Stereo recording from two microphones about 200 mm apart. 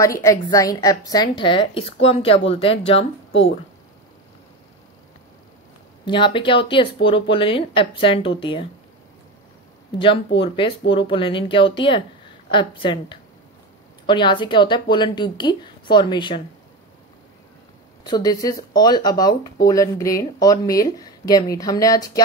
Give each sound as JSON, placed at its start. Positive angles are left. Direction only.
{"t": 0.0, "sound": "a woman's voice", "side_deg": 15}
{"t": 6.0, "sound": "a woman's voice", "side_deg": 25}
{"t": 9.9, "sound": "a woman's voice", "side_deg": 25}
{"t": 18.0, "sound": "speech", "side_deg": 20}